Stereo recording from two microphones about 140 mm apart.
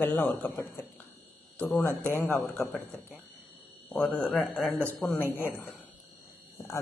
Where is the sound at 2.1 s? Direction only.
15° left (ahead or behind).